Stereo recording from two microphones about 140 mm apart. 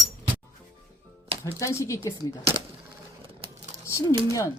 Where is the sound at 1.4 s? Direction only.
20° left (ahead or behind).